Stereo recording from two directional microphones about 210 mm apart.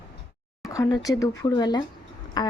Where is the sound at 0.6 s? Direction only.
15° left (ahead or behind).